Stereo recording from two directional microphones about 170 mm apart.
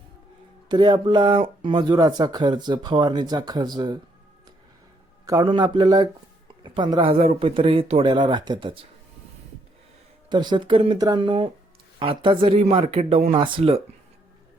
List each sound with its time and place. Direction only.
0.7 s speech: 25° right (ahead or behind)
5.2 s speech: 20° right (ahead or behind)
10.2 s speech: 25° right (ahead or behind)